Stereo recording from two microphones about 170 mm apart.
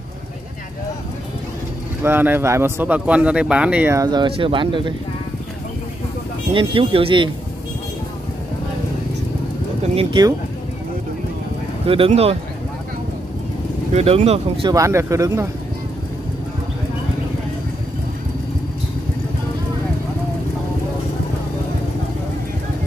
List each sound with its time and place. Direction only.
2.0 s speech: 10° right (ahead or behind); by 4.9 s 30° right (ahead or behind)
6.5 s speech: 30° right (ahead or behind)
9.9 s speech: 25° right (ahead or behind)
11.8 s speech: 35° right (ahead or behind)
13.9 s speech: 35° right (ahead or behind)
14.7 s speech: 15° right (ahead or behind)